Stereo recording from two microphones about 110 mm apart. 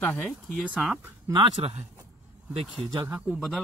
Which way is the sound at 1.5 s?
70° right (ahead or behind).